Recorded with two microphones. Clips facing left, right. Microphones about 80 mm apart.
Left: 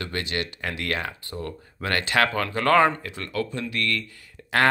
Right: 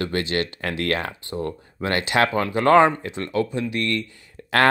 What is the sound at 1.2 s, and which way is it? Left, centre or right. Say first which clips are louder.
Speech: right 5 dB; right.